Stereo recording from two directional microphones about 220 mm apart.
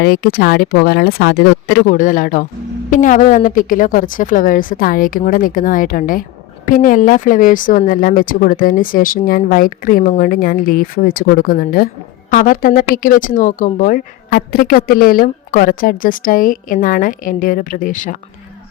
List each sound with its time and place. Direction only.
0.0 s a woman's voice: 45° left (ahead or behind)